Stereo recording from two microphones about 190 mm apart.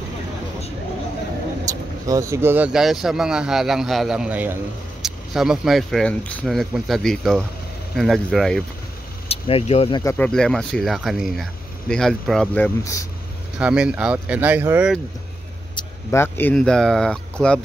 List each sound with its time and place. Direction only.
1.7 s speech: 15° right (ahead or behind); by 8.6 s centre (ahead or behind)
9.3 s speech: 30° left (ahead or behind)
10.0 s speech: 5° left (ahead or behind)
13.6 s speech: 5° right (ahead or behind)
15.7 s speech: 15° left (ahead or behind)